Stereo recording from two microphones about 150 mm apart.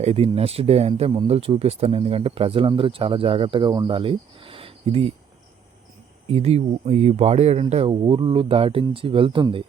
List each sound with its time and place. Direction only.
0.0 s speech: 40° right (ahead or behind)
6.3 s speech: 45° right (ahead or behind)